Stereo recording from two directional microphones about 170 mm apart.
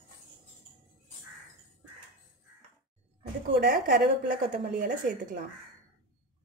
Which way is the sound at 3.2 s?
65° right (ahead or behind).